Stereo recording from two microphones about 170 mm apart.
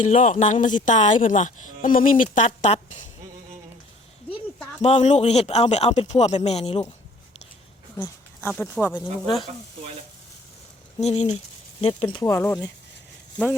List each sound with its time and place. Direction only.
0.0 s a woman's voice: 45° left (ahead or behind)
4.8 s a man's voice: 40° left (ahead or behind)
8.4 s speech: 10° left (ahead or behind)
11.0 s a man's voice: 40° left (ahead or behind)
12.2 s speech: 15° left (ahead or behind)